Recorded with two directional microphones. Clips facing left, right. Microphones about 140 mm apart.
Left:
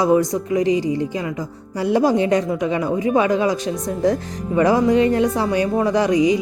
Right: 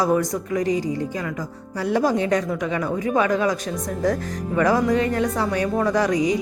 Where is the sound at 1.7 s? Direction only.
30° left (ahead or behind).